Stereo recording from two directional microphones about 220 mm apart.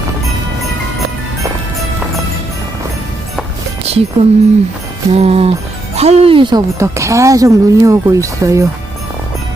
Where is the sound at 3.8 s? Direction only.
25° right (ahead or behind).